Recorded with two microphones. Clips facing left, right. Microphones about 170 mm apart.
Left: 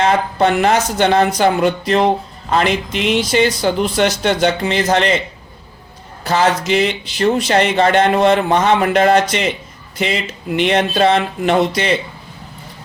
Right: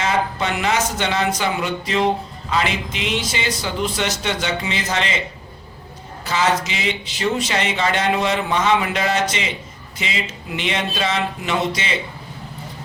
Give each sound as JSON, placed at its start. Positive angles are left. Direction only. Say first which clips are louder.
{"t": 0.0, "sound": "speech", "louder": "left 7 dB", "side_deg": 55}
{"t": 6.2, "sound": "speech", "louder": "left 5 dB", "side_deg": 60}